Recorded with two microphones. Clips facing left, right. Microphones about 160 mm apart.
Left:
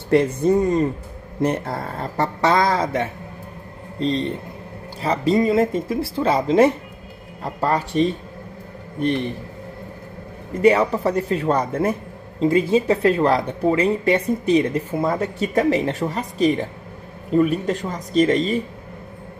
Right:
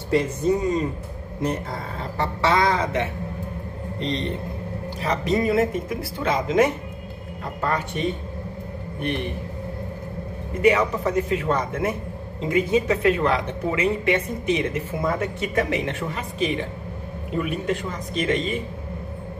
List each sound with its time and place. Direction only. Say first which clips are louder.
0.1 s speech: left 4 dB; 60° left (ahead or behind); by 3.0 s 40° left (ahead or behind)
5.0 s a woman's voice: left 4 dB; 25° left (ahead or behind)
10.6 s a woman's voice: left 3 dB; 35° left (ahead or behind)